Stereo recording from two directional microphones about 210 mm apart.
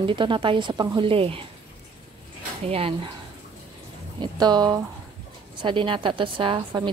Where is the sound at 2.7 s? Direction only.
25° right (ahead or behind).